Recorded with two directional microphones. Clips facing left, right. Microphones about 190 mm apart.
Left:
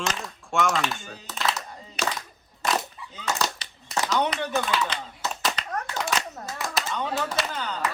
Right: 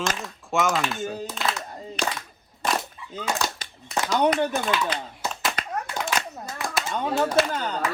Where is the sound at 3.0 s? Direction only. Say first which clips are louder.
Even; centre (ahead or behind).